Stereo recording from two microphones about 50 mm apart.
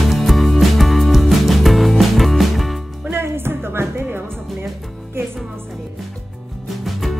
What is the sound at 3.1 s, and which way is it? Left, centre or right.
Music, right.